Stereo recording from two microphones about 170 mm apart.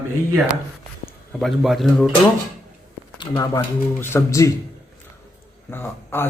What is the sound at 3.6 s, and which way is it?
Speech, 15° left (ahead or behind).